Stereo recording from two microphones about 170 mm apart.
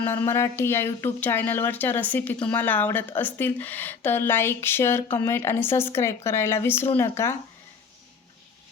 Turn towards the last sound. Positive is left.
turn(degrees=15)  # may be behind; listen again after turning